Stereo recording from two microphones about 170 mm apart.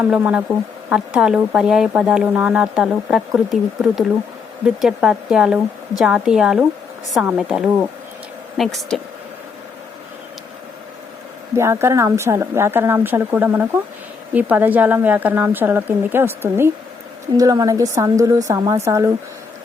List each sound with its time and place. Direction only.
0.0 s a woman's voice: 10° right (ahead or behind)
11.5 s a woman's voice: 15° right (ahead or behind)